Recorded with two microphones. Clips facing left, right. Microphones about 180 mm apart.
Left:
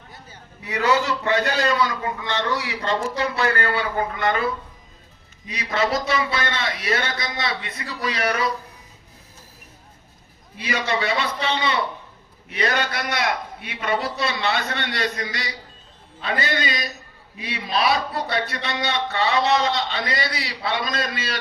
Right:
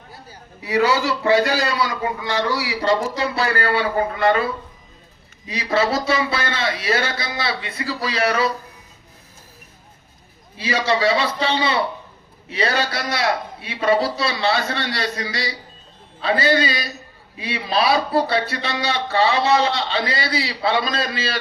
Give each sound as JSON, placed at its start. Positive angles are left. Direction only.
{"t": 0.6, "sound": "a man's voice", "side_deg": -30}
{"t": 1.7, "sound": "a man's voice", "side_deg": -10}
{"t": 2.6, "sound": "speech", "side_deg": -90}
{"t": 3.2, "sound": "a man's voice", "side_deg": -35}
{"t": 5.5, "sound": "speech", "side_deg": -30}
{"t": 10.6, "sound": "a man's voice", "side_deg": -30}